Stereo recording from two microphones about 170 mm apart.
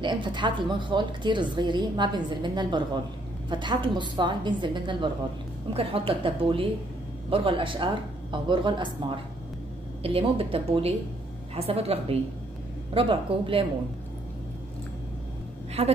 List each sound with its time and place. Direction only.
0.0 s a woman's voice: 25° right (ahead or behind)
15.8 s a woman's voice: 35° right (ahead or behind)